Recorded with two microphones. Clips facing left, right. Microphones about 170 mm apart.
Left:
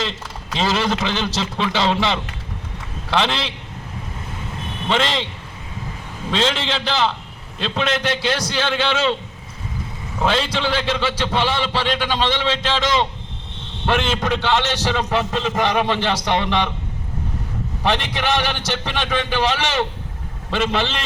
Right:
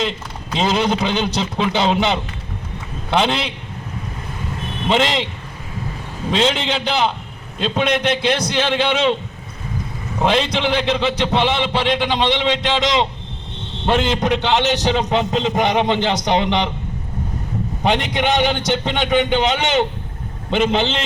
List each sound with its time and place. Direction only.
0.5 s a man's voice: 20° right (ahead or behind)
4.9 s a man's voice: 20° right (ahead or behind)
6.3 s a man's voice: 20° right (ahead or behind)
10.2 s a man's voice: 20° right (ahead or behind)
17.8 s a man's voice: 20° right (ahead or behind)